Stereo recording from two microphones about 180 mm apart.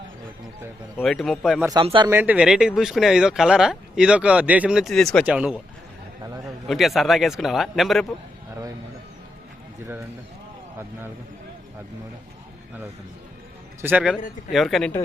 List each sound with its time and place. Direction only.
0.9 s speech: centre (ahead or behind)
1.8 s speech: 30° right (ahead or behind)
2.0 s speech: 10° right (ahead or behind)
6.7 s speech: centre (ahead or behind)
13.8 s speech: 5° right (ahead or behind)